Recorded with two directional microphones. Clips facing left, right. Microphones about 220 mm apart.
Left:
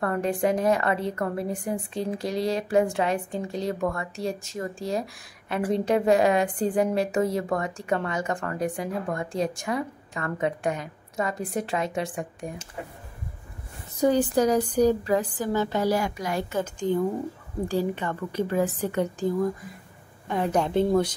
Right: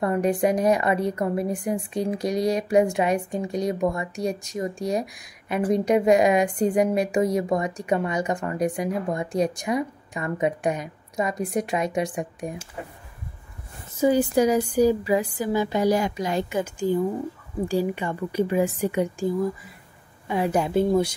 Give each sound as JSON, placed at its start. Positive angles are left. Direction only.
{"t": 0.0, "sound": "a woman's voice", "side_deg": -15}
{"t": 13.9, "sound": "a woman's voice", "side_deg": -5}